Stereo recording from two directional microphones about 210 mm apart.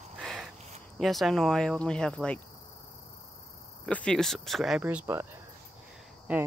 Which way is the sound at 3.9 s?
5° left (ahead or behind).